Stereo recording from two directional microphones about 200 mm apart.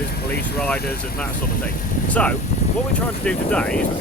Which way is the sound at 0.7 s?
50° left (ahead or behind).